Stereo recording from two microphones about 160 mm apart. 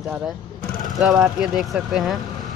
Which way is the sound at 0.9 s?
Centre (ahead or behind).